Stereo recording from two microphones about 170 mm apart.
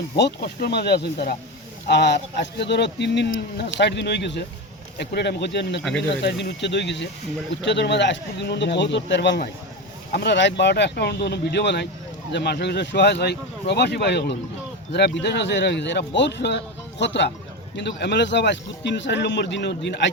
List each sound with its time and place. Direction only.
0.2 s speech: 75° left (ahead or behind)
1.9 s speech: 90° left
4.9 s speech: 75° left (ahead or behind)